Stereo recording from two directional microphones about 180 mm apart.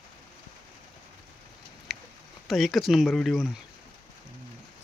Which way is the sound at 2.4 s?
Centre (ahead or behind).